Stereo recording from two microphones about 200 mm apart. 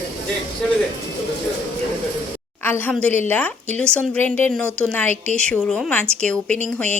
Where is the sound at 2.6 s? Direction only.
10° left (ahead or behind).